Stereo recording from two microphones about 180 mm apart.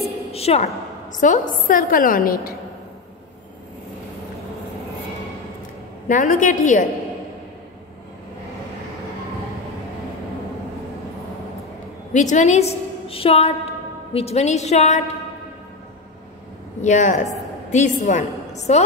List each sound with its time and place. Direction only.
0.3 s a woman's voice: 35° left (ahead or behind)
1.2 s a woman's voice: 45° left (ahead or behind)
6.0 s a woman's voice: 45° left (ahead or behind)
12.1 s a woman's voice: 40° left (ahead or behind)
16.8 s a woman's voice: 45° left (ahead or behind)